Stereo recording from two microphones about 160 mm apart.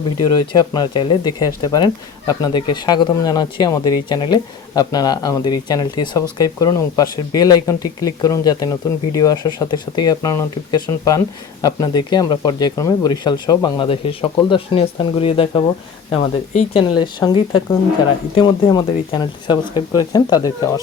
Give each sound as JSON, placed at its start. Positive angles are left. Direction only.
{"t": 0.5, "sound": "speech", "side_deg": 25}